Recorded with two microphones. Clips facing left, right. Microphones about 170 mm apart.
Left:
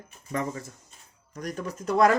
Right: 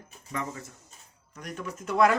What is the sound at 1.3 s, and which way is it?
Speech, 40° left (ahead or behind).